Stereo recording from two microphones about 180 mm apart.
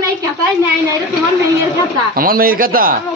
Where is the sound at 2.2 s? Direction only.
55° right (ahead or behind).